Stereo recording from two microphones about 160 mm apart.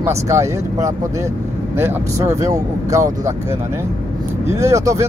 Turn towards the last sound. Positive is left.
turn(degrees=-20)  # may be behind; listen again after turning